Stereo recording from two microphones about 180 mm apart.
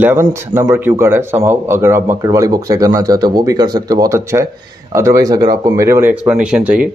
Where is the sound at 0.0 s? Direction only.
15° right (ahead or behind).